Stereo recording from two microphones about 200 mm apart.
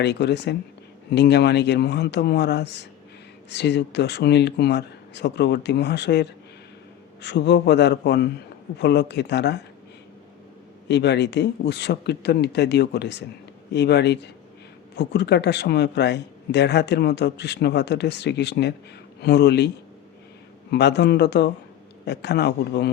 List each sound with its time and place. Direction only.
0.0 s speech: 55° left (ahead or behind)
10.8 s speech: 55° left (ahead or behind)